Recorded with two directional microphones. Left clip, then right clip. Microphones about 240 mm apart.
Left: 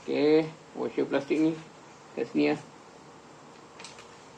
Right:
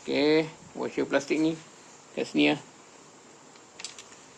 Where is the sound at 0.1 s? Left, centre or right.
Right.